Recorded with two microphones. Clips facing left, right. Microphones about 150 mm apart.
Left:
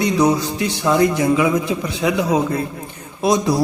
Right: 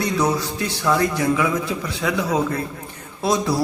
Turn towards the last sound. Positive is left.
turn(degrees=20)  # may be behind; listen again after turning